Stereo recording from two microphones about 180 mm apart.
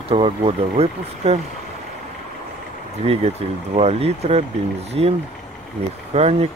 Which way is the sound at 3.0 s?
35° right (ahead or behind).